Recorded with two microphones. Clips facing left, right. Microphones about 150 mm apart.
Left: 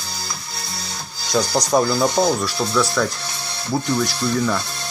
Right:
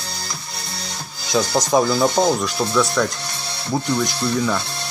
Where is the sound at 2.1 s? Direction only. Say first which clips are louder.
Right 1 dB; 20° right (ahead or behind).